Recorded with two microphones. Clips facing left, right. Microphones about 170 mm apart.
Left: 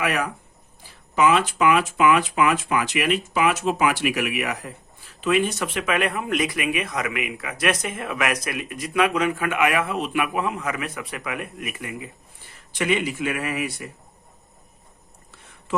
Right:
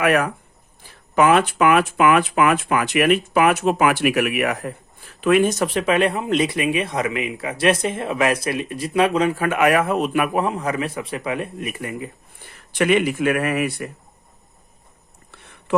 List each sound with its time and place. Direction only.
0.0 s speech: 55° right (ahead or behind); by 11.9 s 30° right (ahead or behind)
11.9 s speech: 50° right (ahead or behind)